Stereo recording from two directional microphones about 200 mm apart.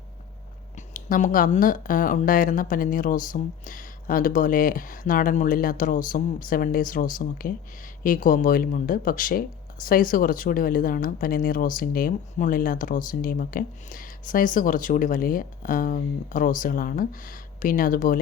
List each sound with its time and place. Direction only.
0.8 s speech: 40° left (ahead or behind)